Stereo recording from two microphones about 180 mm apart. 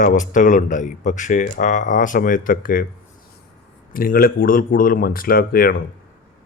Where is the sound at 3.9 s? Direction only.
50° left (ahead or behind).